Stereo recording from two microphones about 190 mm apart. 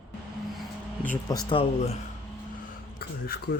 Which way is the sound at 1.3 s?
20° left (ahead or behind).